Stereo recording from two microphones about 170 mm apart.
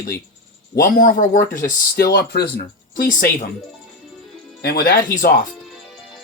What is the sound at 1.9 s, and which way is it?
Speech, 75° left (ahead or behind).